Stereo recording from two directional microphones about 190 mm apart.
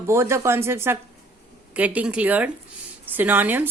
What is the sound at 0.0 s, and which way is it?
A woman's voice, 15° right (ahead or behind).